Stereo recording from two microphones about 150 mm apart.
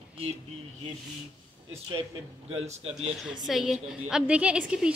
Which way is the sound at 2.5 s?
45° right (ahead or behind).